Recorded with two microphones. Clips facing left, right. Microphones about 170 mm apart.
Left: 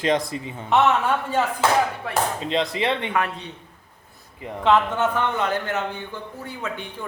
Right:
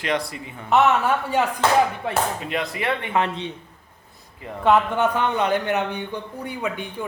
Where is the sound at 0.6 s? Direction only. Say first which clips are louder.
Right 1 dB; 5° right (ahead or behind).